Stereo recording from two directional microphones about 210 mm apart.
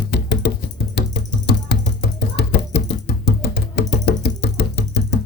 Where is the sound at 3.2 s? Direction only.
50° left (ahead or behind).